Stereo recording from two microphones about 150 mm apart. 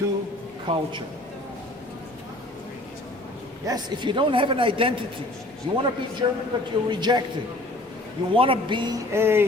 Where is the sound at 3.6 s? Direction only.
30° right (ahead or behind).